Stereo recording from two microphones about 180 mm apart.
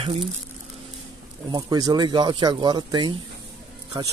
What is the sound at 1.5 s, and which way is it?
A man's voice, 25° right (ahead or behind).